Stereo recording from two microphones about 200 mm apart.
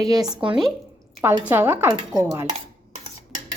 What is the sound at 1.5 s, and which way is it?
Dishes, 10° right (ahead or behind).